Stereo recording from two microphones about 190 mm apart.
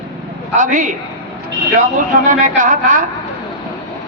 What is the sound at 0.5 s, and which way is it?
Speech, 45° right (ahead or behind).